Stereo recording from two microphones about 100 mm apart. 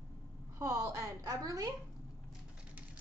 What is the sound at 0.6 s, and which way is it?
A woman's voice, 30° right (ahead or behind).